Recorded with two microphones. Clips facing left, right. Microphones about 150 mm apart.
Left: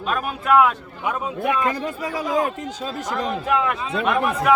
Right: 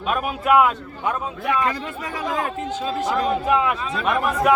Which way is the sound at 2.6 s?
40° left (ahead or behind).